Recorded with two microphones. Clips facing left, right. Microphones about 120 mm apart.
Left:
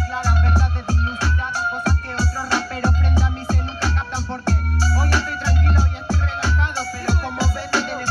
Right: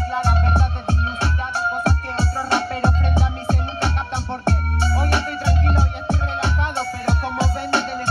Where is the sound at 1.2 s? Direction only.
25° right (ahead or behind).